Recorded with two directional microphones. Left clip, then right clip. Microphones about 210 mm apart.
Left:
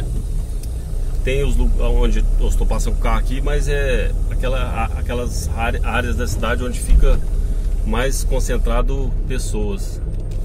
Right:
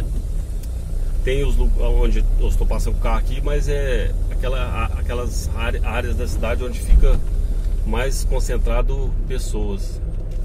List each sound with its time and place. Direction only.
1.2 s speech: 15° left (ahead or behind)